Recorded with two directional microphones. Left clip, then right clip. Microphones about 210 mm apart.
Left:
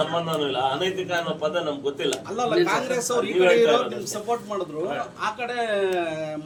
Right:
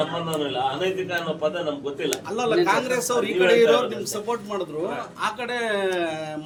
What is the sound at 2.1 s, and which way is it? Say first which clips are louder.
A man's voice: right 3 dB; 40° right (ahead or behind).